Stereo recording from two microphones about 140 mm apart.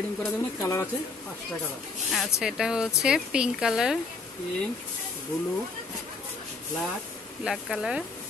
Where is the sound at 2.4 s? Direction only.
5° right (ahead or behind).